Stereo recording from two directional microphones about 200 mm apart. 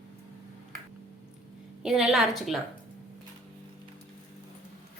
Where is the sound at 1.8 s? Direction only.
Centre (ahead or behind).